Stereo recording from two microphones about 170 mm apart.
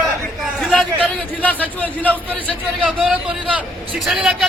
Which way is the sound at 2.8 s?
5° right (ahead or behind).